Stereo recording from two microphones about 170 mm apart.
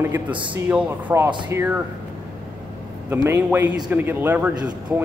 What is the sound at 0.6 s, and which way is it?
Speech, 10° right (ahead or behind).